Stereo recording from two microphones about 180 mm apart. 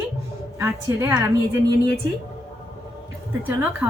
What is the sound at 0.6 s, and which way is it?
A woman's voice, 15° right (ahead or behind).